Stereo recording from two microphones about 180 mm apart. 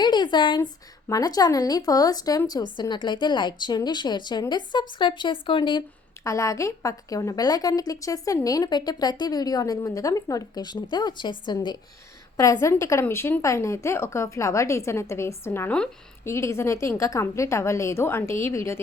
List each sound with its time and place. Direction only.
0.0 s a woman's voice: 25° left (ahead or behind)
6.2 s a woman's voice: 15° left (ahead or behind)